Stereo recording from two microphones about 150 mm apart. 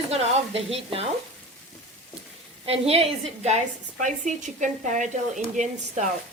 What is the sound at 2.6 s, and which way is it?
A woman's voice, 40° right (ahead or behind).